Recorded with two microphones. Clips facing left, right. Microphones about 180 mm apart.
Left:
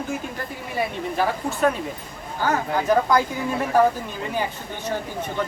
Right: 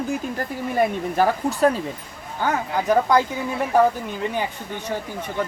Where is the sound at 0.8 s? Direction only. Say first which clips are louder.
Right 4 dB; 45° right (ahead or behind).